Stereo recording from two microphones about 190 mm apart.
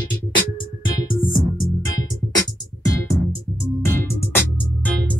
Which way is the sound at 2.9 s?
15° left (ahead or behind).